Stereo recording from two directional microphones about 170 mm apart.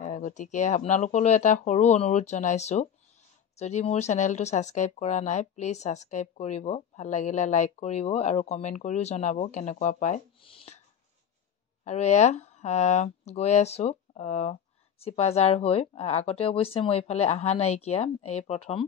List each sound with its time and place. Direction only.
0.0 s speech: 45° left (ahead or behind)
10.4 s a sound: 35° left (ahead or behind)
11.8 s speech: 40° left (ahead or behind)